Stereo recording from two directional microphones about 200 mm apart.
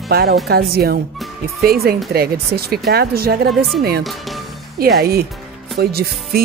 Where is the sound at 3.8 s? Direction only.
50° right (ahead or behind).